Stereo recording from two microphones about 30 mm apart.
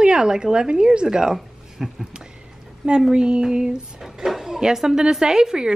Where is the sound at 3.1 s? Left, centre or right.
Right.